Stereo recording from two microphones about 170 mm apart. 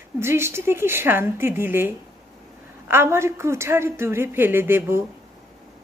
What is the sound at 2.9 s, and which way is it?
A woman's voice, 15° right (ahead or behind).